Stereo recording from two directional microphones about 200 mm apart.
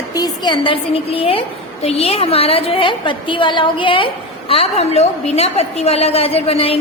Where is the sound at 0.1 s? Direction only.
20° left (ahead or behind).